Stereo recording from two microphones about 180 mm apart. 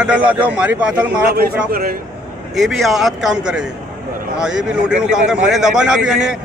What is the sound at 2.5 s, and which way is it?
Speech, centre (ahead or behind).